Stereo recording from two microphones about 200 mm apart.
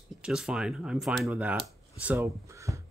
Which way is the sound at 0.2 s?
5° right (ahead or behind).